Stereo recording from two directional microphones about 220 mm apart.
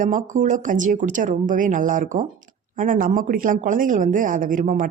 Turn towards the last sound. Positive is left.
turn(degrees=-35)  # may be behind; listen again after turning